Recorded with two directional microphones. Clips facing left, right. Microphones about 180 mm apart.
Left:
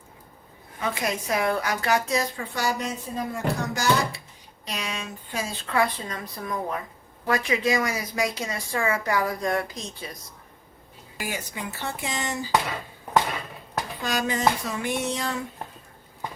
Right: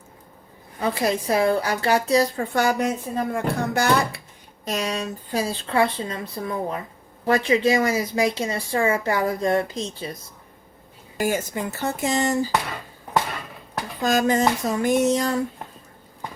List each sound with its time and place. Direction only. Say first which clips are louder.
0.8 s a woman's voice: right 5 dB; 35° right (ahead or behind); by 4.2 s 55° right (ahead or behind)
4.6 s a woman's voice: right 7 dB; 45° right (ahead or behind); by 10.2 s 30° right (ahead or behind)
11.2 s speech: right 9 dB; 45° right (ahead or behind)
14.0 s a woman's voice: right 6 dB; 45° right (ahead or behind)